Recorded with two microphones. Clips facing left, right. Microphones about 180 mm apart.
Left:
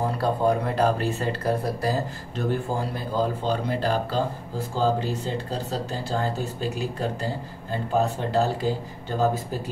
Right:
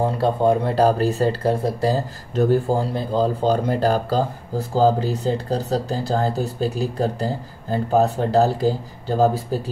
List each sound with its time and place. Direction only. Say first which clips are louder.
0.0 s speech: right 4 dB; 25° right (ahead or behind)